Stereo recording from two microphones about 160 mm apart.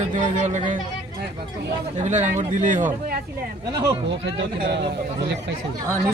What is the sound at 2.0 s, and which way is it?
Speech, 50° right (ahead or behind).